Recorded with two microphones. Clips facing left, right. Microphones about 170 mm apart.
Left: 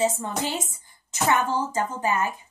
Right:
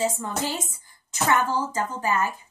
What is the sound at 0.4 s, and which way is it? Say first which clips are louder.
Speech: left 1 dB; 20° left (ahead or behind).